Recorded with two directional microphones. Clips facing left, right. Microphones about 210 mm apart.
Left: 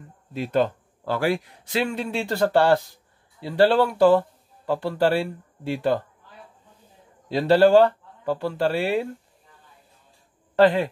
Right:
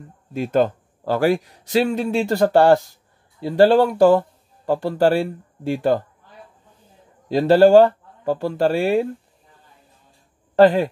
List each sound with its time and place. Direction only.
0.3 s a man's voice: 45° right (ahead or behind)
7.2 s a man's voice: 45° right (ahead or behind)
10.5 s speech: 40° right (ahead or behind)